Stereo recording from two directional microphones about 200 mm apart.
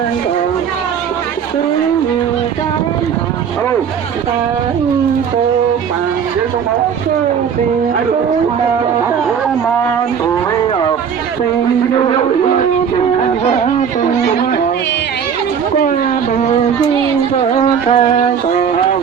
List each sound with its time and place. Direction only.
11.9 s speech: 25° left (ahead or behind)
13.1 s a sound: 30° left (ahead or behind)
17.3 s speech: 30° left (ahead or behind)